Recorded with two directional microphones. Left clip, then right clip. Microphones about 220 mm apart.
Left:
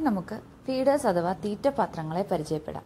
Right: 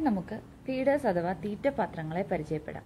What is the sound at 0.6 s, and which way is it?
Speech, 10° left (ahead or behind).